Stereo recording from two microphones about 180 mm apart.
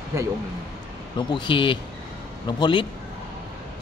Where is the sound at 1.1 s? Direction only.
25° left (ahead or behind).